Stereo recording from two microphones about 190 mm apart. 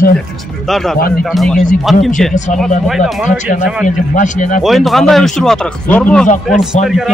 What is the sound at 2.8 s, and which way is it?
Speech, centre (ahead or behind).